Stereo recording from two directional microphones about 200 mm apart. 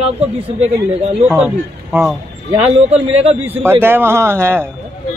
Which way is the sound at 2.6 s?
30° right (ahead or behind).